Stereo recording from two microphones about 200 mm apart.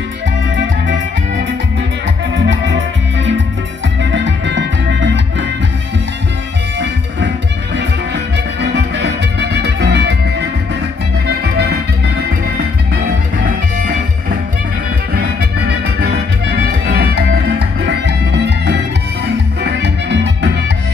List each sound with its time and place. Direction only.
2.3 s music: 65° right (ahead or behind)
4.0 s music: 65° right (ahead or behind)
8.5 s music: 60° right (ahead or behind)
13.5 s music: 45° right (ahead or behind)
15.7 s music: 55° right (ahead or behind)